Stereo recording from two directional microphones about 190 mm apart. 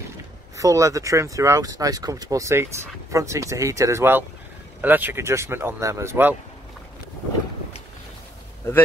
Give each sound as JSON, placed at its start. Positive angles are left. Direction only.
{"t": 0.6, "sound": "speech", "side_deg": -15}